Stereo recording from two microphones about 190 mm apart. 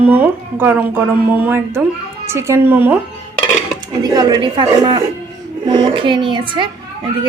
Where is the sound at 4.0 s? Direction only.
20° right (ahead or behind).